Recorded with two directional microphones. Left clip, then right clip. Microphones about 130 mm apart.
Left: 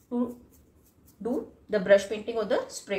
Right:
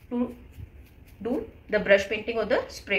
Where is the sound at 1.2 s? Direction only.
20° left (ahead or behind).